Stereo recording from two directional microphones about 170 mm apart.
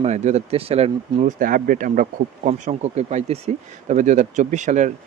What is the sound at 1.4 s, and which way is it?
Speech, 55° right (ahead or behind).